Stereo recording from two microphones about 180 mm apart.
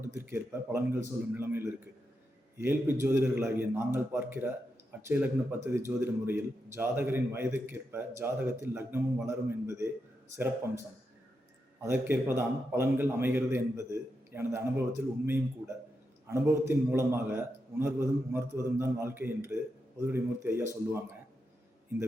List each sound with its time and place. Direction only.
0.1 s a man's voice: 15° right (ahead or behind)